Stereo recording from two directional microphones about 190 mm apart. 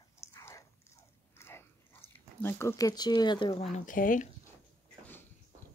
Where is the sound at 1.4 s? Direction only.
10° left (ahead or behind); by 4.3 s 45° left (ahead or behind).